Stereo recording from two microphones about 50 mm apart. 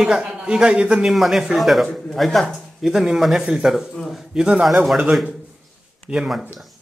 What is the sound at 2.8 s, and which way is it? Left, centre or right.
A man's voice, centre.